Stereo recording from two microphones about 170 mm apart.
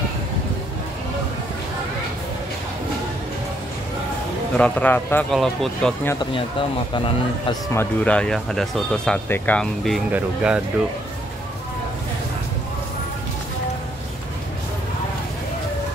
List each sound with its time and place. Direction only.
4.6 s a man's voice: 5° left (ahead or behind)
7.7 s speech: 10° left (ahead or behind); by 10.6 s 5° right (ahead or behind)